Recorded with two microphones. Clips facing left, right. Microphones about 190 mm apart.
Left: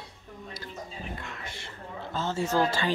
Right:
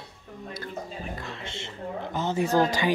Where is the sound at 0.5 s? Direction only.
55° right (ahead or behind).